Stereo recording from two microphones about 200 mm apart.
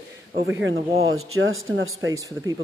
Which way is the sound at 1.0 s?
85° right.